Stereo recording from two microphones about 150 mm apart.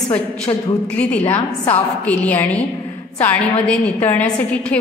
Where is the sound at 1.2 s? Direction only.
45° left (ahead or behind).